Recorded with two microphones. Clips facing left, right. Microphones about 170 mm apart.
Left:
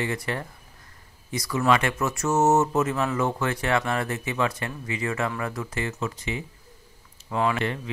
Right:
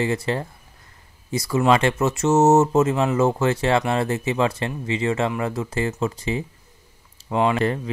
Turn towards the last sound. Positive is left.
turn(degrees=-35)  # may be behind; listen again after turning